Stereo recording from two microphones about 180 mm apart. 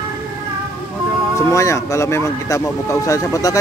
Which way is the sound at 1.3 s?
15° left (ahead or behind).